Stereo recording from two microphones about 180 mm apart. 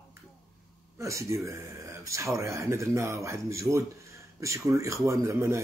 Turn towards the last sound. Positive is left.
turn(degrees=-15)  # may be behind; listen again after turning